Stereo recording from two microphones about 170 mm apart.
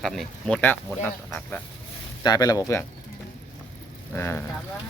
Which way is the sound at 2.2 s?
25° left (ahead or behind).